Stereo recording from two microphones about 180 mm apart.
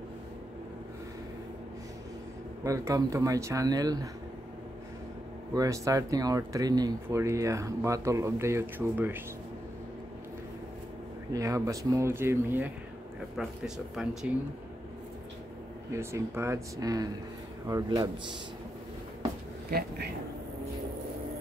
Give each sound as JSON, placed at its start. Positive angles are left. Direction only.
{"t": 2.6, "sound": "speech", "side_deg": -15}
{"t": 5.5, "sound": "speech", "side_deg": -20}
{"t": 11.3, "sound": "speech", "side_deg": -20}
{"t": 15.9, "sound": "a man's voice", "side_deg": -15}